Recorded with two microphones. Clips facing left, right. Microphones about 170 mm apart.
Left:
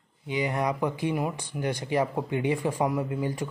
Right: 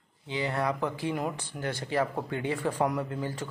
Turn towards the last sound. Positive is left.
turn(degrees=15)  # may be behind; listen again after turning